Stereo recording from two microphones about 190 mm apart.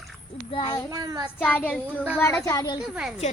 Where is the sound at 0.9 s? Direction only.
20° right (ahead or behind).